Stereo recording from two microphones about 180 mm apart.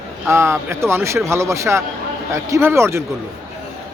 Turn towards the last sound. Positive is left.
turn(degrees=-15)  # may be behind; listen again after turning